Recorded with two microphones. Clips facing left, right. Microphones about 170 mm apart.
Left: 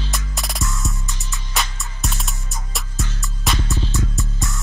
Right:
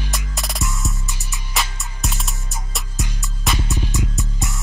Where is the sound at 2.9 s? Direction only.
15° right (ahead or behind).